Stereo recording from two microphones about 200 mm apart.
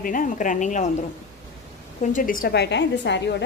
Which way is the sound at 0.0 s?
40° left (ahead or behind).